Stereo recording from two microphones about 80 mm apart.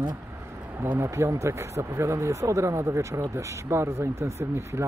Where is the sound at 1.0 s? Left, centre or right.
Right.